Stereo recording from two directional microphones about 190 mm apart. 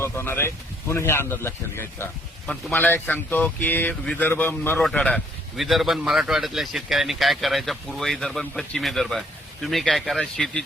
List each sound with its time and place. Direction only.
0.0 s speech: 10° left (ahead or behind)